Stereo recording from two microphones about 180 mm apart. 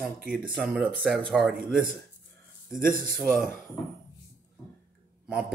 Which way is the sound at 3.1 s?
5° right (ahead or behind).